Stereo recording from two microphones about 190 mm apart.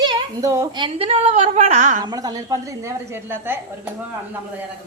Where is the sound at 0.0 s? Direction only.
15° right (ahead or behind); by 2.0 s 40° right (ahead or behind).